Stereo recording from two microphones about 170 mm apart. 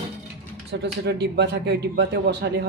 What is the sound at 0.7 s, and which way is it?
Speech, 80° right.